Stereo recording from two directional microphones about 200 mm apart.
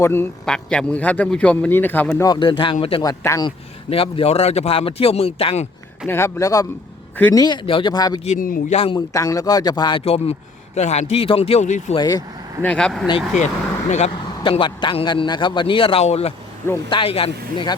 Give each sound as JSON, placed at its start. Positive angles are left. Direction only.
{"t": 0.0, "sound": "a man's voice", "side_deg": 10}
{"t": 3.1, "sound": "a man's voice", "side_deg": 15}
{"t": 3.8, "sound": "speech", "side_deg": 30}
{"t": 6.1, "sound": "a man's voice", "side_deg": 15}
{"t": 7.4, "sound": "speech", "side_deg": 25}
{"t": 8.2, "sound": "speech", "side_deg": 40}
{"t": 9.0, "sound": "speech", "side_deg": 15}
{"t": 11.9, "sound": "speech", "side_deg": 20}
{"t": 12.6, "sound": "speech", "side_deg": 5}
{"t": 13.1, "sound": "speech", "side_deg": 30}